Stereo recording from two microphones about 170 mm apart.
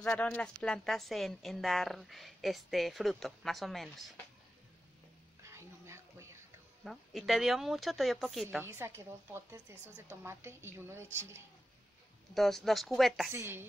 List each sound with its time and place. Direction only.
0.0 s a woman's voice: 5° left (ahead or behind)
5.4 s a sound: 15° right (ahead or behind)
6.8 s a woman's voice: centre (ahead or behind)
8.6 s a woman's voice: 15° right (ahead or behind)
12.4 s a woman's voice: centre (ahead or behind)
13.3 s a woman's voice: 15° right (ahead or behind)